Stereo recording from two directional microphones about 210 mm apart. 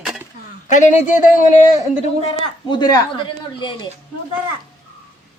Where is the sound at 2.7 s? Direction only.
20° left (ahead or behind).